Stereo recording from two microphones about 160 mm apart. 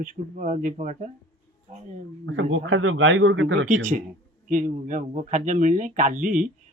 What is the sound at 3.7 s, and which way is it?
Speech, 55° right (ahead or behind).